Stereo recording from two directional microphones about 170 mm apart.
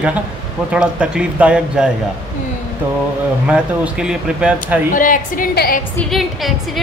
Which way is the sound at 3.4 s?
5° right (ahead or behind).